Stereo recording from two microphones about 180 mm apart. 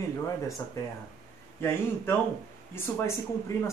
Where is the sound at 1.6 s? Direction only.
15° left (ahead or behind).